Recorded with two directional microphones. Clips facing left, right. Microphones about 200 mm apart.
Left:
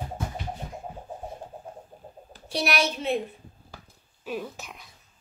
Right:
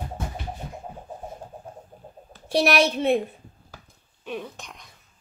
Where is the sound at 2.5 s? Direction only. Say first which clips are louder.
Right 6 dB; 55° right (ahead or behind).